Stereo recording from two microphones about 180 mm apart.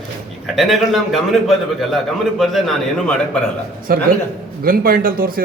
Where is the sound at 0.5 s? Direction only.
Centre (ahead or behind).